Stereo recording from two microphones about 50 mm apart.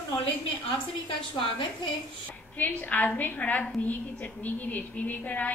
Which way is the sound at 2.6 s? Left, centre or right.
Left.